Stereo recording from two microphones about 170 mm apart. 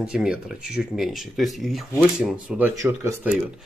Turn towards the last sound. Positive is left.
turn(degrees=-15)  # may be behind; listen again after turning